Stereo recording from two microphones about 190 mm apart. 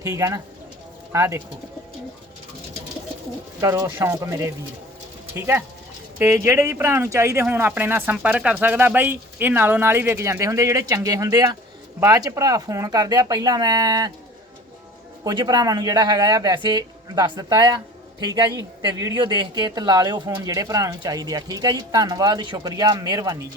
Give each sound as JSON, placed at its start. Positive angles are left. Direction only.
{"t": 0.0, "sound": "speech", "side_deg": -15}
{"t": 3.6, "sound": "a woman's voice", "side_deg": -20}
{"t": 15.2, "sound": "a woman's voice", "side_deg": -20}